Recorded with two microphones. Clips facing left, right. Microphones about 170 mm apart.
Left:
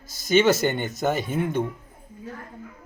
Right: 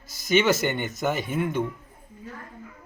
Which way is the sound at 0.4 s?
35° left (ahead or behind).